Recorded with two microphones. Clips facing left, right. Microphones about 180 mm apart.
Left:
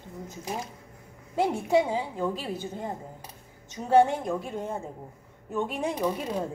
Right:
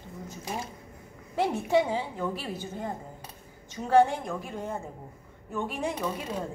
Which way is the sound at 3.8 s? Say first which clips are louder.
Left 1 dB; 25° left (ahead or behind).